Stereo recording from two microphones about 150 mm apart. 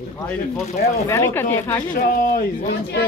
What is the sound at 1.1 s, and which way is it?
Speech, 15° left (ahead or behind).